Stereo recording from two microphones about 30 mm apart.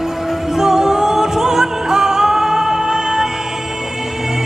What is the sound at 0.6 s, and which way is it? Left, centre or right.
Music, centre.